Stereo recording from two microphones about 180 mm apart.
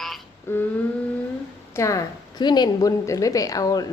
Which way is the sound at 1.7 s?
15° left (ahead or behind).